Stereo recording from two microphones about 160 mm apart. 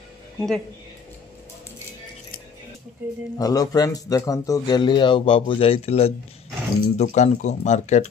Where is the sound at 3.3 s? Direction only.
20° left (ahead or behind).